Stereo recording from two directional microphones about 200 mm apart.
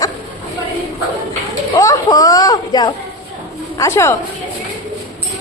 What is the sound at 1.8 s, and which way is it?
Speech, 15° left (ahead or behind).